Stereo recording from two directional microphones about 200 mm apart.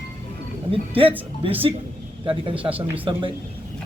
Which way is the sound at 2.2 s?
25° right (ahead or behind).